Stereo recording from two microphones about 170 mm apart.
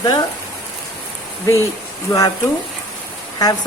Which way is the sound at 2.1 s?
25° left (ahead or behind).